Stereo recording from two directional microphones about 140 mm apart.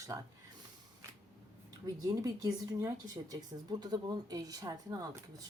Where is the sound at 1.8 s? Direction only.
25° right (ahead or behind).